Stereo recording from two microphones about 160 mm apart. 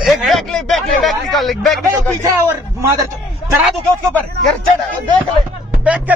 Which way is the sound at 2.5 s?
20° right (ahead or behind).